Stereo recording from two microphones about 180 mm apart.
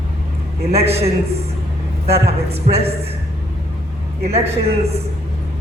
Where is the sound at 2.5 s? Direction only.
35° right (ahead or behind).